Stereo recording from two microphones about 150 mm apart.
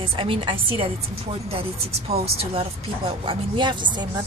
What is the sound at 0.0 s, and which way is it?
A woman's voice, 35° right (ahead or behind).